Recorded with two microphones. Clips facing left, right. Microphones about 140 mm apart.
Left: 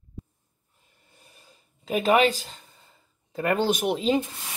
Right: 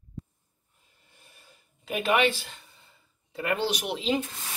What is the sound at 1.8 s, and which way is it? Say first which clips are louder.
Speech: left 4 dB; 35° left (ahead or behind).